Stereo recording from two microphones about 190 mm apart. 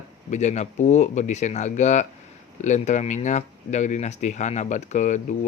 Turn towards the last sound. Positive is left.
turn(degrees=40)  # may be behind; listen again after turning